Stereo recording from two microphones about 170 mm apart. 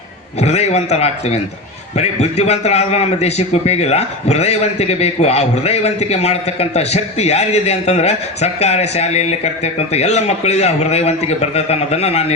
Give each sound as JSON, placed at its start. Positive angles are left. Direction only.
{"t": 0.4, "sound": "a man's voice", "side_deg": 40}